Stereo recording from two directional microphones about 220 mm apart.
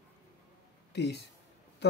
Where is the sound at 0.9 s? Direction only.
50° left (ahead or behind).